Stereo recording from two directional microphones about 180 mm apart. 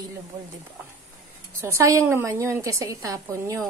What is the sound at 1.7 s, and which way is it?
A woman's voice, 15° right (ahead or behind).